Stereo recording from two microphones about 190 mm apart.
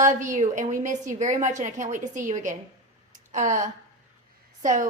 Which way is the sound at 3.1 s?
40° right (ahead or behind).